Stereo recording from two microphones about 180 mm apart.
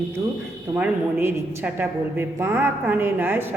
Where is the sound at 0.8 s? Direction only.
10° right (ahead or behind).